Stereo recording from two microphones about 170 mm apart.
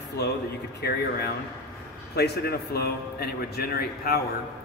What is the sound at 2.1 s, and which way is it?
Speech, 70° left (ahead or behind).